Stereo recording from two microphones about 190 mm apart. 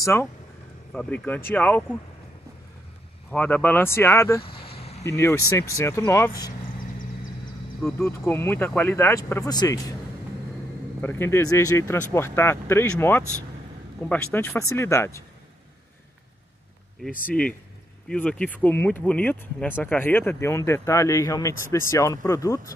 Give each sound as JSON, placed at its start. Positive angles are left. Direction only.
{"t": 0.0, "sound": "speech", "side_deg": 15}
{"t": 3.3, "sound": "speech", "side_deg": 10}
{"t": 4.5, "sound": "a sound", "side_deg": 30}
{"t": 5.0, "sound": "speech", "side_deg": 15}
{"t": 8.0, "sound": "speech", "side_deg": 10}
{"t": 11.0, "sound": "speech", "side_deg": 10}
{"t": 18.0, "sound": "speech", "side_deg": 5}